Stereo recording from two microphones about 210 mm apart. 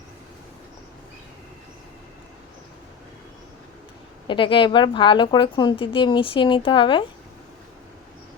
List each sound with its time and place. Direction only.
4.3 s a woman's voice: 25° left (ahead or behind)